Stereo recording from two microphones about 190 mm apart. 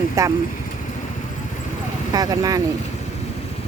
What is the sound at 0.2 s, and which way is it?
Speech, 15° right (ahead or behind).